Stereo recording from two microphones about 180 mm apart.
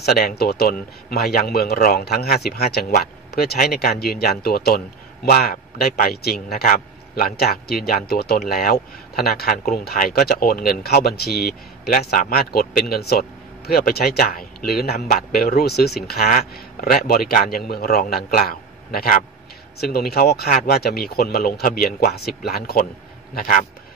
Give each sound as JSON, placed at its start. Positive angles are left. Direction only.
{"t": 0.0, "sound": "a man's voice", "side_deg": 60}
{"t": 15.0, "sound": "a man's voice", "side_deg": 45}
{"t": 15.3, "sound": "a man's voice", "side_deg": 60}